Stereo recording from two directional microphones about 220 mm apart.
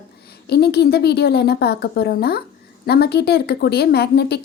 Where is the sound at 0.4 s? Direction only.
45° left (ahead or behind).